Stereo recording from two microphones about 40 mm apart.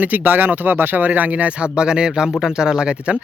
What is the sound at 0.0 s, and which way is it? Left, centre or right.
Speech, right.